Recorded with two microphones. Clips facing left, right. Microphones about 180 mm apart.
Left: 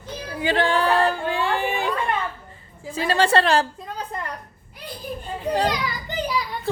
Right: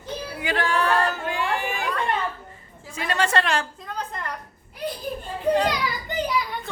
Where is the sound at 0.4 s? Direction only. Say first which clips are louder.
Left 4 dB; 30° left (ahead or behind).